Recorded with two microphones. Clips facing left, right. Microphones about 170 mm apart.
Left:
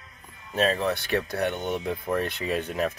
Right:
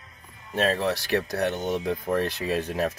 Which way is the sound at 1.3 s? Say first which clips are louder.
Right 1 dB; 35° right (ahead or behind).